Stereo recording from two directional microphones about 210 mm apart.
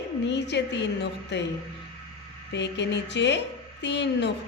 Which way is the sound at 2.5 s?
55° left (ahead or behind).